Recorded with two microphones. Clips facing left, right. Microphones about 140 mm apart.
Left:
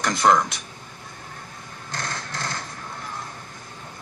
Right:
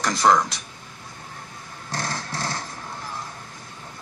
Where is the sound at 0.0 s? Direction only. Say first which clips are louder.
Even; centre (ahead or behind).